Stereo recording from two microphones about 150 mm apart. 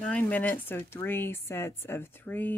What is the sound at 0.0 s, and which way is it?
A woman's voice, 10° left (ahead or behind).